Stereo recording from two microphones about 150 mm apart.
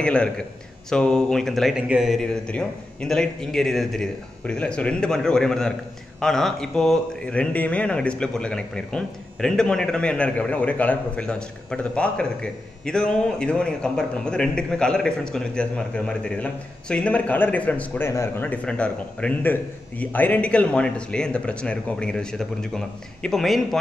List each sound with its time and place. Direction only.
0.0 s a man's voice: 5° left (ahead or behind)